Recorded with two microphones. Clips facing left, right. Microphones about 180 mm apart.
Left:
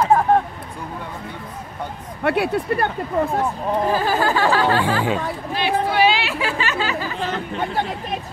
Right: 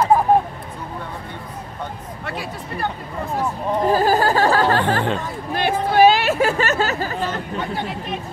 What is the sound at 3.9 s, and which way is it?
Speech, 40° right (ahead or behind).